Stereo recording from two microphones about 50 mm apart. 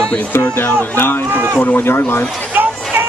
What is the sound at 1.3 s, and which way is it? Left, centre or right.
Speech, right.